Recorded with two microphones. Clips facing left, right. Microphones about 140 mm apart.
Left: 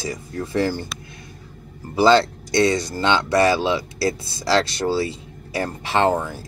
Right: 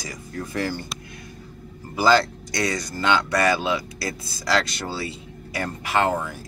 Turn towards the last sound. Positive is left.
turn(degrees=30)  # may be behind; listen again after turning